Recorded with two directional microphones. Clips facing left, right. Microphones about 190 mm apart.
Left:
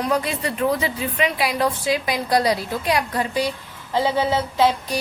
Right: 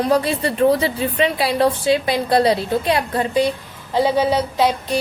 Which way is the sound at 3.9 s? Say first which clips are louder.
Right 3 dB; 15° right (ahead or behind).